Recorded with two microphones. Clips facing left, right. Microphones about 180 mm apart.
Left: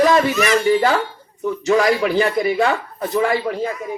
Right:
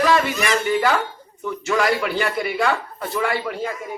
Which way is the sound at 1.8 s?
20° left (ahead or behind).